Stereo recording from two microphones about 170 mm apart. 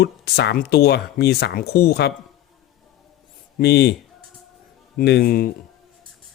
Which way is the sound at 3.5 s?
75° left (ahead or behind).